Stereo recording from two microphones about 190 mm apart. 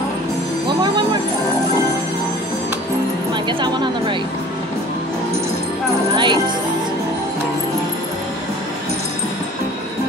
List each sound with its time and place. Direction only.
3.4 s a woman's voice: 25° right (ahead or behind)
6.1 s speech: 25° right (ahead or behind)